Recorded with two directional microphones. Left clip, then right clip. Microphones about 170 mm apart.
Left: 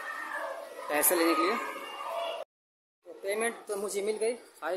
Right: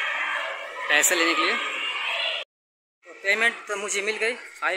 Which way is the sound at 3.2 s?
10° left (ahead or behind).